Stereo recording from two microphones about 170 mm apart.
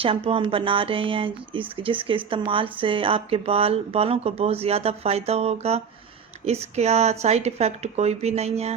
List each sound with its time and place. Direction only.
0.0 s speech: 30° right (ahead or behind)